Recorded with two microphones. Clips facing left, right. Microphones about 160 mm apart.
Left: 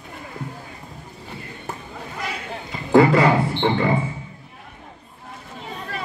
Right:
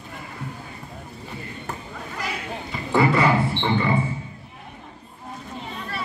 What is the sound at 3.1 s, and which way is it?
Speech, 45° left (ahead or behind).